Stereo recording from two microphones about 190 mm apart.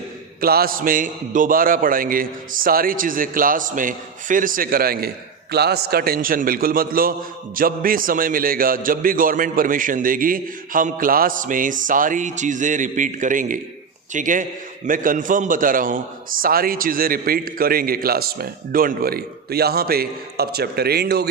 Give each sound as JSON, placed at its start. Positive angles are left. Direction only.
{"t": 0.4, "sound": "a man's voice", "side_deg": -50}